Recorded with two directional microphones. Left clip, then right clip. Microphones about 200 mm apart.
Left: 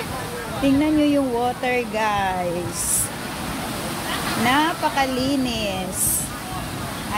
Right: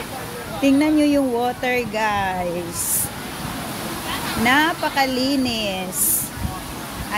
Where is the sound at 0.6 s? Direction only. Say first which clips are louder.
Right 2 dB; 25° right (ahead or behind).